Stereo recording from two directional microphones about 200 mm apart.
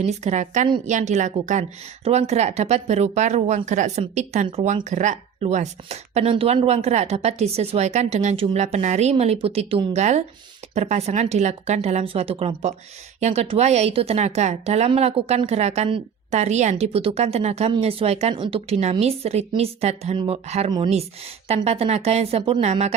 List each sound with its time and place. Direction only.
0.0 s a woman's voice: 35° right (ahead or behind)